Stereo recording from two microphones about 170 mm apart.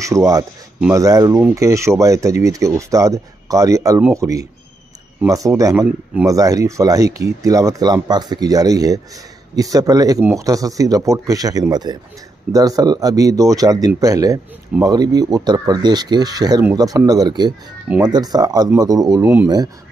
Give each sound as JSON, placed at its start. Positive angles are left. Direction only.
{"t": 0.0, "sound": "speech", "side_deg": -20}